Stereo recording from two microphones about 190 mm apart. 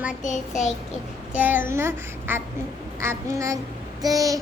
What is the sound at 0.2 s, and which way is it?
Child singing, 40° left (ahead or behind).